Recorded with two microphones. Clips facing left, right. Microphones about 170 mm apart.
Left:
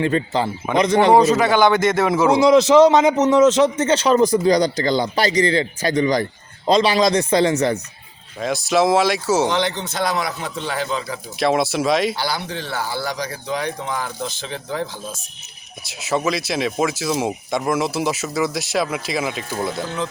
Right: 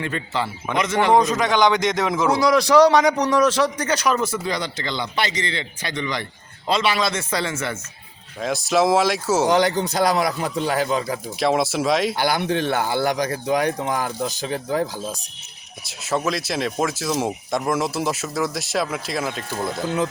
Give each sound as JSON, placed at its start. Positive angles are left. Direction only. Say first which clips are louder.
{"t": 0.0, "sound": "a man's voice", "louder": "left 6 dB", "side_deg": 35}
{"t": 1.1, "sound": "speech", "louder": "left 1 dB", "side_deg": 5}
{"t": 2.3, "sound": "a man's voice", "louder": "left 4 dB", "side_deg": 25}
{"t": 8.6, "sound": "speech", "louder": "left 1 dB", "side_deg": 0}
{"t": 9.5, "sound": "a man's voice", "louder": "right 3 dB", "side_deg": -40}
{"t": 11.3, "sound": "speech", "louder": "left 2 dB", "side_deg": 0}
{"t": 12.1, "sound": "speech", "louder": "right 4 dB", "side_deg": -50}
{"t": 16.0, "sound": "speech", "louder": "left 2 dB", "side_deg": 0}